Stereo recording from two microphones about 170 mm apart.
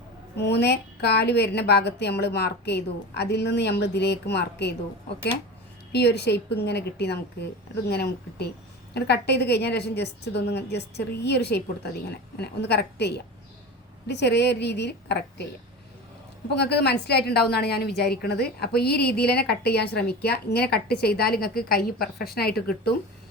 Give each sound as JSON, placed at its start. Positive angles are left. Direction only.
{"t": 0.4, "sound": "a woman's voice", "side_deg": 80}
{"t": 5.9, "sound": "a woman's voice", "side_deg": 80}
{"t": 16.6, "sound": "a woman's voice", "side_deg": 70}